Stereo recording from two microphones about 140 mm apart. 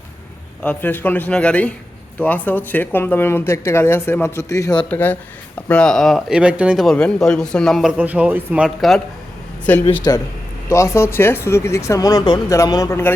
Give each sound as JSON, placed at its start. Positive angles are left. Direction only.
{"t": 0.6, "sound": "speech", "side_deg": 10}
{"t": 4.8, "sound": "a man's voice", "side_deg": 10}
{"t": 6.8, "sound": "a man's voice", "side_deg": 5}
{"t": 9.7, "sound": "speech", "side_deg": 10}
{"t": 10.1, "sound": "speech", "side_deg": 30}